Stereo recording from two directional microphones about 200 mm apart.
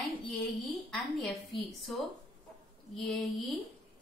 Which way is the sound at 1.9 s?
Centre (ahead or behind).